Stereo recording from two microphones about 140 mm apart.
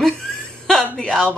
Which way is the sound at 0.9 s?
5° left (ahead or behind).